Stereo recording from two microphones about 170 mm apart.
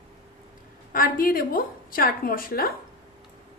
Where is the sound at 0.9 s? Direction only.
55° left (ahead or behind).